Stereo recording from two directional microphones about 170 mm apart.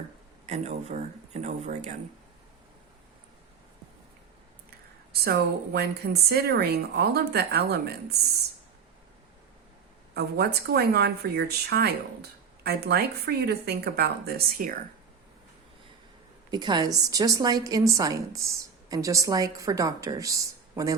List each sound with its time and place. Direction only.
0.4 s speech: 40° right (ahead or behind)
5.2 s speech: 70° right (ahead or behind)
10.2 s speech: 70° right (ahead or behind)
16.5 s a woman's voice: 25° right (ahead or behind)